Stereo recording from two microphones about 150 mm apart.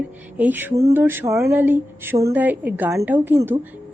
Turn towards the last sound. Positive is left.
turn(degrees=-15)  # may be behind; listen again after turning